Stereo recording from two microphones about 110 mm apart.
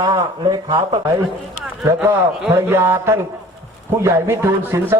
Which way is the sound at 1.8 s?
25° right (ahead or behind).